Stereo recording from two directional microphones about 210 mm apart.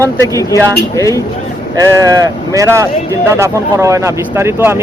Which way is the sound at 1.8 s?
15° right (ahead or behind).